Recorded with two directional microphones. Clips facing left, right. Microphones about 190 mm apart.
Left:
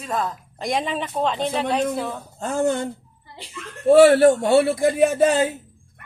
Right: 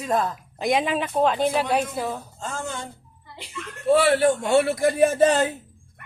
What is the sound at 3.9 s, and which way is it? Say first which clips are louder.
A man's voice: left 8 dB; 45° left (ahead or behind).